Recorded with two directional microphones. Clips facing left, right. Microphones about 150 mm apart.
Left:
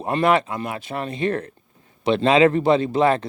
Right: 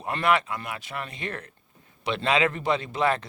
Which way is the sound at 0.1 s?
30° left (ahead or behind).